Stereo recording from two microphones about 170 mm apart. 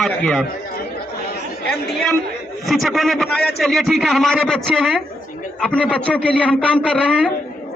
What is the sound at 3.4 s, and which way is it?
Speech, 70° left (ahead or behind).